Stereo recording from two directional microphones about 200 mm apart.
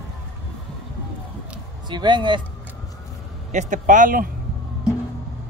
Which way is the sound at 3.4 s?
40° right (ahead or behind).